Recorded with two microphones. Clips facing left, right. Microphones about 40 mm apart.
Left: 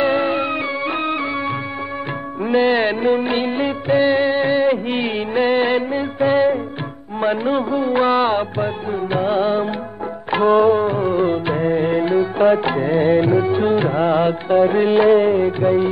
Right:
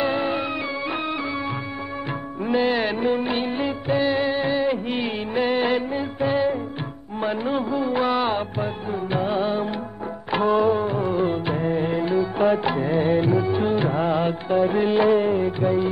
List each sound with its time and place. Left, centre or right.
0.0 s music: left
2.4 s music of bollywood: left
7.2 s music: left